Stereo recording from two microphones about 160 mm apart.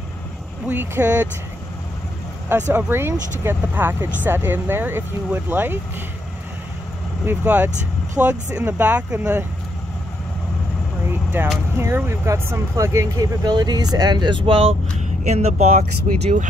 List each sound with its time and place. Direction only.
0.7 s speech: 10° right (ahead or behind)
2.7 s speech: 15° right (ahead or behind)
7.2 s speech: 10° right (ahead or behind)
11.4 s speech: 15° right (ahead or behind); by 14.7 s 35° right (ahead or behind)
15.2 s speech: 45° right (ahead or behind)